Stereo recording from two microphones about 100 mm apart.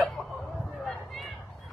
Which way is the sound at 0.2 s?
Centre (ahead or behind).